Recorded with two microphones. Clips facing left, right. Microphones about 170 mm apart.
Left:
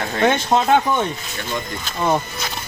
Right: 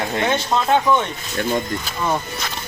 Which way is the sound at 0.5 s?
50° left (ahead or behind).